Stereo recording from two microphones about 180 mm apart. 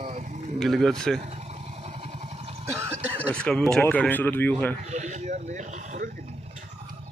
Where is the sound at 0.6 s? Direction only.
Centre (ahead or behind).